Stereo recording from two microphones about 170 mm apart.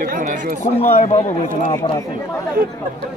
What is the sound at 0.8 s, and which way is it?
Speech, 40° left (ahead or behind).